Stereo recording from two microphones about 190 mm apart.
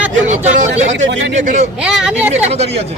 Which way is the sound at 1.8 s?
5° right (ahead or behind).